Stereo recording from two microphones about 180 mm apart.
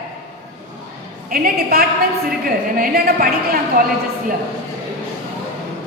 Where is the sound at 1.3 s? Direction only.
60° right (ahead or behind).